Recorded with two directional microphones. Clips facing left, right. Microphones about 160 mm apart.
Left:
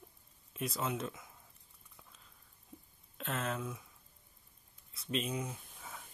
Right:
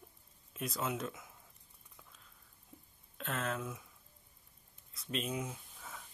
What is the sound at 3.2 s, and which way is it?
Speech, centre (ahead or behind).